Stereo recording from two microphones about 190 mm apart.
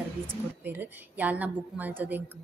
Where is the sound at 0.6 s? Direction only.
10° right (ahead or behind).